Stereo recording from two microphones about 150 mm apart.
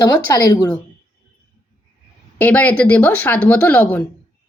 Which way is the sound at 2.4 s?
10° left (ahead or behind).